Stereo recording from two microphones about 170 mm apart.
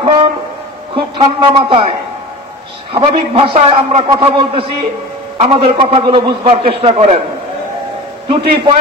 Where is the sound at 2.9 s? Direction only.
35° right (ahead or behind).